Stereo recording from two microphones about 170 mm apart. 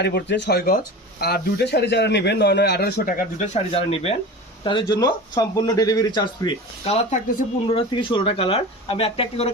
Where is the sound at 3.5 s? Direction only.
35° left (ahead or behind).